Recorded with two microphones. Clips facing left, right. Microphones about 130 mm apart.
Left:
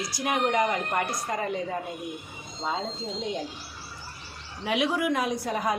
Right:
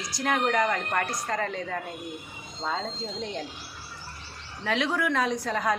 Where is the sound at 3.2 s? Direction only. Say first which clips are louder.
Left 3 dB; 15° left (ahead or behind).